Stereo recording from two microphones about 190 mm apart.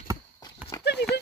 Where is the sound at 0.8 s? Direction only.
60° left (ahead or behind).